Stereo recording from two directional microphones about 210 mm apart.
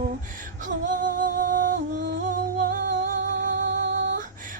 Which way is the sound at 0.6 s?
40° right (ahead or behind).